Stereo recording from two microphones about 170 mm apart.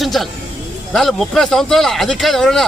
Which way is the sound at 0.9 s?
Centre (ahead or behind).